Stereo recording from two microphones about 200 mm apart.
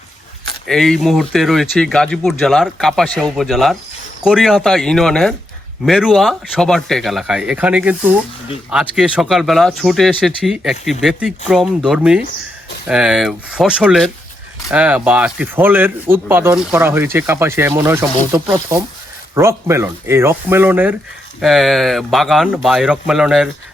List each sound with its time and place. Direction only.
0.7 s speech: centre (ahead or behind)